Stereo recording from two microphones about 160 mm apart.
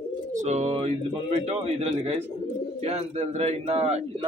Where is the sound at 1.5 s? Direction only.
40° right (ahead or behind).